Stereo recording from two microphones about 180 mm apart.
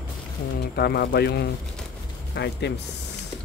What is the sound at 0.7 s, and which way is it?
Speech, 60° left (ahead or behind).